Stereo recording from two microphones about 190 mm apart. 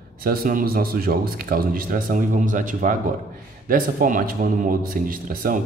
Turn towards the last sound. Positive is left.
turn(degrees=-50)  # may be behind; listen again after turning